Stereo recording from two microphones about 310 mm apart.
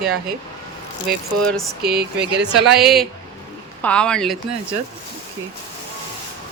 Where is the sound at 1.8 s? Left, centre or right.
Right.